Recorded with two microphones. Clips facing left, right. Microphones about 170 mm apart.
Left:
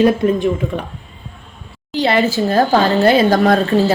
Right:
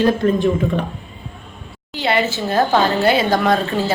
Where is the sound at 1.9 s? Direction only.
40° left (ahead or behind).